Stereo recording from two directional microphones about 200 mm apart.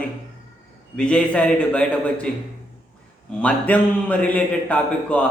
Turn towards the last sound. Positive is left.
turn(degrees=5)  # may be behind; listen again after turning